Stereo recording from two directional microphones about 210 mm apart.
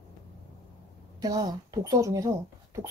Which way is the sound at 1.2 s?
20° right (ahead or behind).